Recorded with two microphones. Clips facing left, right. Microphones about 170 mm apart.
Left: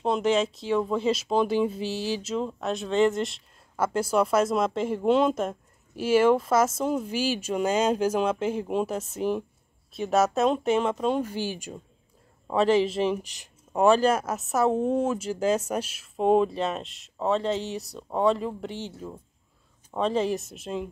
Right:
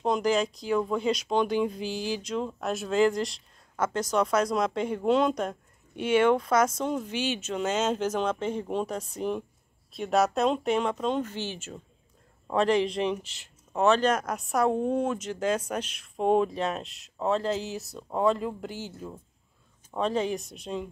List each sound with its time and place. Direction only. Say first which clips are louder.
0.0 s speech: left 2 dB; centre (ahead or behind)